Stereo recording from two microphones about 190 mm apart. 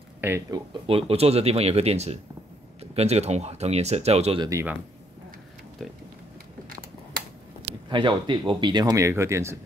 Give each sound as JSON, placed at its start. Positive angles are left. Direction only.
{"t": 0.2, "sound": "speech", "side_deg": -10}
{"t": 0.8, "sound": "speech", "side_deg": -30}
{"t": 4.5, "sound": "speech", "side_deg": -15}
{"t": 5.8, "sound": "speech", "side_deg": 0}
{"t": 7.9, "sound": "speech", "side_deg": -25}